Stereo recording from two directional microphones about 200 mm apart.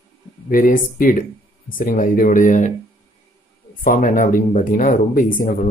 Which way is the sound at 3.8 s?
40° left (ahead or behind).